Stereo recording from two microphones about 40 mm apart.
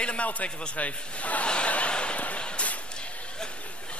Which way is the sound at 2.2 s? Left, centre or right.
Left.